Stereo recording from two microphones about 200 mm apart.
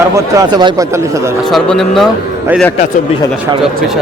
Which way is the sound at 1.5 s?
Centre (ahead or behind).